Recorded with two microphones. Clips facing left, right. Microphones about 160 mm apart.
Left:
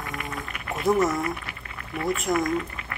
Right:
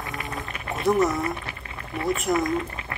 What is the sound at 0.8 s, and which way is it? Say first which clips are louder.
Speech: right 1 dB; centre (ahead or behind).